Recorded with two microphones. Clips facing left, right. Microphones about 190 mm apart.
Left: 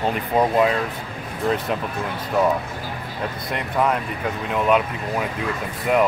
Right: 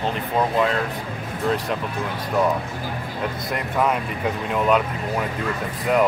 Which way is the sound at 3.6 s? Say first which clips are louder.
Left 1 dB; centre (ahead or behind).